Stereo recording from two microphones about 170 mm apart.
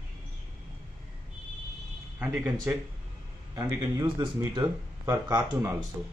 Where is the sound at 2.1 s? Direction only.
10° right (ahead or behind).